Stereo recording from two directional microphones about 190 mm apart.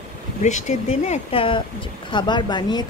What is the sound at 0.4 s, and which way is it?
Speech, 40° left (ahead or behind).